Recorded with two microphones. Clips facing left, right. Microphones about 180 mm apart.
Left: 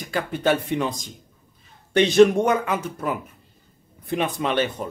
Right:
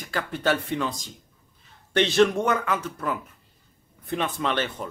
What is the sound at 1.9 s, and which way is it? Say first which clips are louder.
A man's voice: left 5 dB; 15° left (ahead or behind).